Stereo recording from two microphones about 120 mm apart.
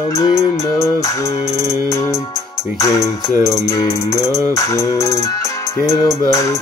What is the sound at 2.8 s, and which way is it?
Music, 25° left (ahead or behind).